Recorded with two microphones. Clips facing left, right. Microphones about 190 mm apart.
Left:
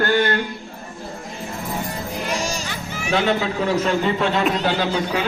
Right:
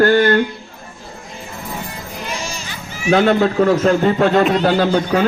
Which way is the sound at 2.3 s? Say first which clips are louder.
Left 2 dB; 40° left (ahead or behind).